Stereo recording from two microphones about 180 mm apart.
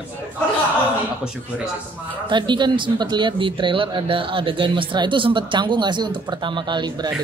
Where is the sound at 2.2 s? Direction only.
25° right (ahead or behind).